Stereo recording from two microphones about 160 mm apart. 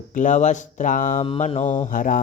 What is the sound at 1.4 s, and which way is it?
Mantra, 40° left (ahead or behind).